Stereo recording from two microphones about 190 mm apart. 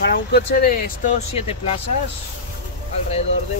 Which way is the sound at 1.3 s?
30° left (ahead or behind).